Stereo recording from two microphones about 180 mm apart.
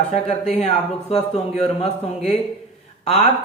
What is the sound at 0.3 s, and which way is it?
Speech, 30° left (ahead or behind).